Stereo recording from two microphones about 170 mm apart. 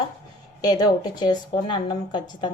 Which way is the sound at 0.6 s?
25° left (ahead or behind).